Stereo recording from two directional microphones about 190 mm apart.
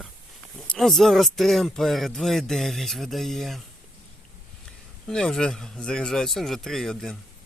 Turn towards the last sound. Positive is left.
turn(degrees=5)  # may be behind; listen again after turning